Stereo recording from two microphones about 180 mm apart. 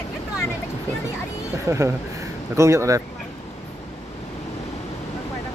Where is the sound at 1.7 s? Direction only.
15° right (ahead or behind).